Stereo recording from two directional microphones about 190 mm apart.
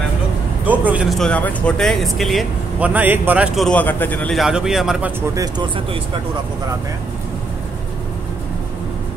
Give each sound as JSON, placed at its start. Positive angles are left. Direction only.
{"t": 0.7, "sound": "speech", "side_deg": -5}
{"t": 5.3, "sound": "speech", "side_deg": -20}